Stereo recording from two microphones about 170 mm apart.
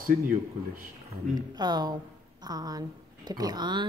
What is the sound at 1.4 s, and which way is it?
Speech, 25° right (ahead or behind).